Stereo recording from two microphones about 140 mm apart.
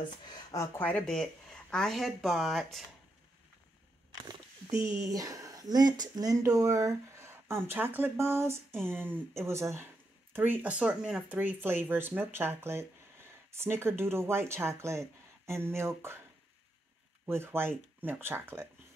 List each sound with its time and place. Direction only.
0.3 s speech: 25° left (ahead or behind)
0.8 s speech: 5° left (ahead or behind)
4.8 s speech: 25° right (ahead or behind)
17.3 s speech: 15° right (ahead or behind)